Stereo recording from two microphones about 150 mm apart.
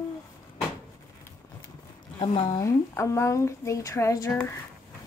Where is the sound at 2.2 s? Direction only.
40° left (ahead or behind).